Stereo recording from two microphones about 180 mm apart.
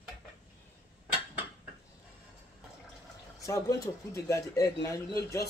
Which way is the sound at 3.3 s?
15° left (ahead or behind).